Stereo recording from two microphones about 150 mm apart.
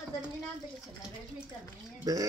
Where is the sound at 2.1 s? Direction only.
25° right (ahead or behind).